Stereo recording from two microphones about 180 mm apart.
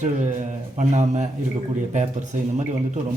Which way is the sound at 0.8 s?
40° right (ahead or behind).